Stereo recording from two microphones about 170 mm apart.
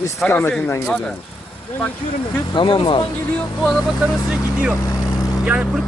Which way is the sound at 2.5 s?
30° left (ahead or behind).